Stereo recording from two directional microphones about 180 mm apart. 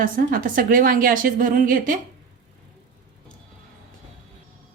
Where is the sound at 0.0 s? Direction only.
50° right (ahead or behind).